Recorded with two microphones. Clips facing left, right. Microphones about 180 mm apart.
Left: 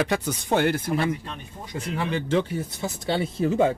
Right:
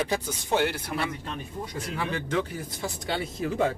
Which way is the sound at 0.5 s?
50° left (ahead or behind).